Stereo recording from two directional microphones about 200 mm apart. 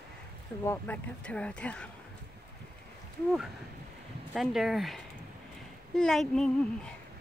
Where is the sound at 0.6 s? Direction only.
10° left (ahead or behind).